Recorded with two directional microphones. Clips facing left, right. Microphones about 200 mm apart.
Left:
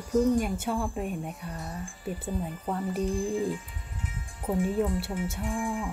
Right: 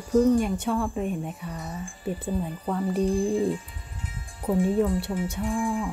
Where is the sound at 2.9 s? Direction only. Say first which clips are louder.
Right 6 dB; 35° right (ahead or behind).